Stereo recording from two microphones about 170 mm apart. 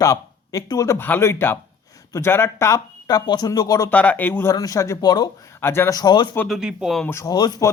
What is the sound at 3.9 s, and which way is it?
Speech, 10° left (ahead or behind).